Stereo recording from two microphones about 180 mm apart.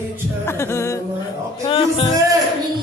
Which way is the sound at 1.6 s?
25° left (ahead or behind).